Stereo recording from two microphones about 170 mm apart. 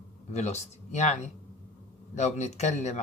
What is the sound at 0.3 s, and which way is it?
A man's voice, 40° left (ahead or behind).